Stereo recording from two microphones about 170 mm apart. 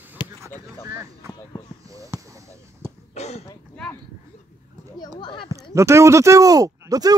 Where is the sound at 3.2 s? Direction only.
40° left (ahead or behind).